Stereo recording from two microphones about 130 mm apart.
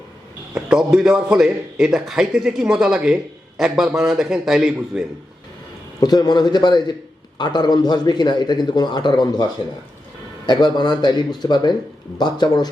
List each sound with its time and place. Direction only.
0.5 s a man's voice: 5° right (ahead or behind)
6.0 s speech: 30° left (ahead or behind)